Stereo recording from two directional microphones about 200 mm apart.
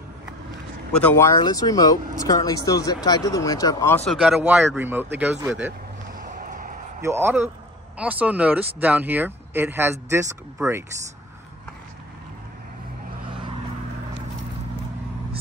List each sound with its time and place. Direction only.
0.9 s speech: 10° left (ahead or behind)
4.0 s speech: centre (ahead or behind)
6.2 s basketball bounce: 40° right (ahead or behind)
7.0 s speech: 10° right (ahead or behind)